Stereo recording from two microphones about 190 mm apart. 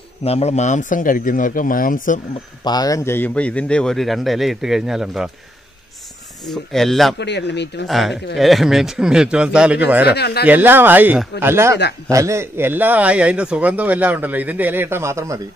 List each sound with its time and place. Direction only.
0.2 s speech: 35° left (ahead or behind)
2.6 s a man's voice: 20° left (ahead or behind); by 5.3 s centre (ahead or behind)
6.5 s a man's voice: centre (ahead or behind)
7.2 s speech: 65° left (ahead or behind)
7.8 s a man's voice: centre (ahead or behind)
10.0 s speech: 60° left (ahead or behind)
10.4 s speech: 10° right (ahead or behind)